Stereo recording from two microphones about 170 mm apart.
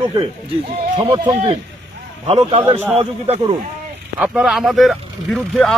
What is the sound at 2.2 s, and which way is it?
Speech, 35° right (ahead or behind).